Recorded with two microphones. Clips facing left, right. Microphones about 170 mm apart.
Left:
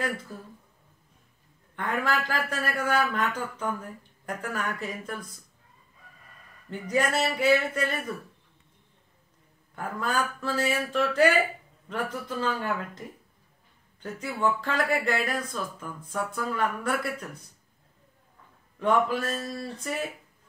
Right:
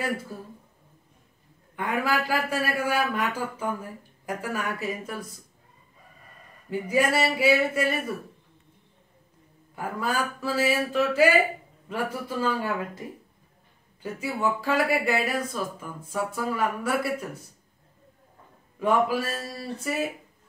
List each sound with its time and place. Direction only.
1.8 s speech: 10° right (ahead or behind)
6.7 s speech: 10° right (ahead or behind)
9.8 s speech: 5° right (ahead or behind)
14.0 s speech: 5° right (ahead or behind)
18.8 s speech: 10° right (ahead or behind)